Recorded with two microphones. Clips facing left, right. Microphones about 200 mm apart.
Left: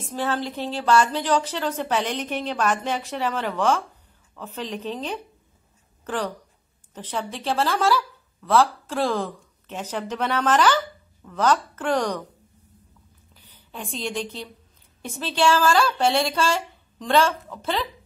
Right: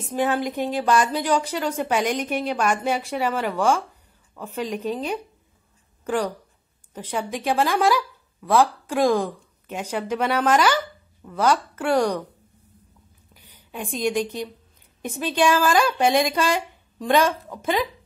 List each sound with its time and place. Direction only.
0.0 s a woman's voice: 15° right (ahead or behind)
13.3 s a woman's voice: 15° right (ahead or behind)